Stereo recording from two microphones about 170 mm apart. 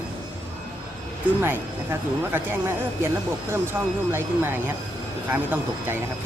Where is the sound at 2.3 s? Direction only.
10° right (ahead or behind).